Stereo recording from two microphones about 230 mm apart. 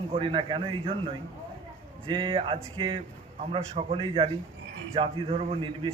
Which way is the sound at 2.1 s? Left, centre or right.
Right.